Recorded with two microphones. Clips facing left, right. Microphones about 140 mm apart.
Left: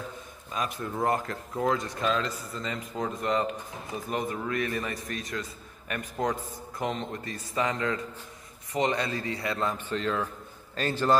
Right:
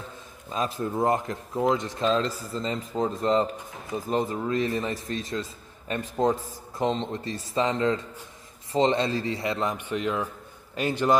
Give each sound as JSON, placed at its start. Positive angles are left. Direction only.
{"t": 0.5, "sound": "a man's voice", "side_deg": -30}